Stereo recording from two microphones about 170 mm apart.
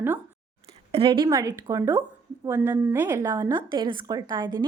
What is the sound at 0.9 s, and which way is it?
A woman's voice, 30° right (ahead or behind).